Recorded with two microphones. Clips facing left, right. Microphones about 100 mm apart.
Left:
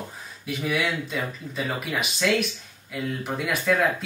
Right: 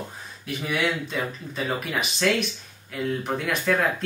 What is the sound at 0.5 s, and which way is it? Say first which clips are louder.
Speech: even; centre (ahead or behind).